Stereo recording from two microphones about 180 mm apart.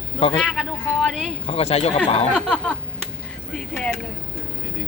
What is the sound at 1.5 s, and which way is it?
Speech, 35° left (ahead or behind).